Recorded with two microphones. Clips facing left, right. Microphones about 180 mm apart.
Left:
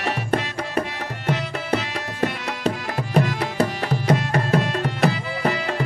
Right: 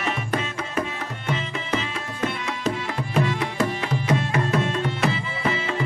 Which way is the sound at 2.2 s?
40° left (ahead or behind).